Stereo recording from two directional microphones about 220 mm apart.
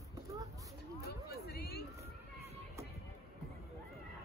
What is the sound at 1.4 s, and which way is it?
Vehicle, 45° left (ahead or behind).